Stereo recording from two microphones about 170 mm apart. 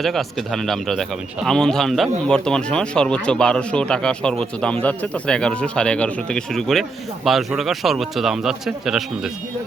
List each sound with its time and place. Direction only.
0.0 s speech: centre (ahead or behind)